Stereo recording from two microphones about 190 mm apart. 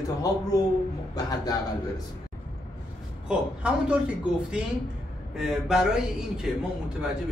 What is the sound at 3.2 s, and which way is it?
Speech, 5° right (ahead or behind).